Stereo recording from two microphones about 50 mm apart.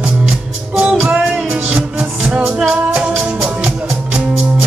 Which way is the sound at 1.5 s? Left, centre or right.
Right.